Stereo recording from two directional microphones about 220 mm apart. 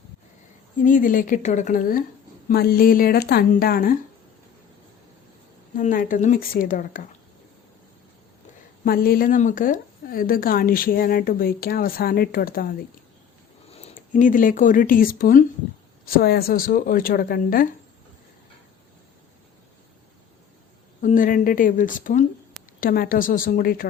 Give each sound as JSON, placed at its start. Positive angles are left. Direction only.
{"t": 0.8, "sound": "a woman's voice", "side_deg": 35}
{"t": 5.7, "sound": "a woman's voice", "side_deg": 40}
{"t": 8.8, "sound": "a woman's voice", "side_deg": 40}
{"t": 13.7, "sound": "a woman's voice", "side_deg": 30}
{"t": 21.0, "sound": "a woman's voice", "side_deg": 35}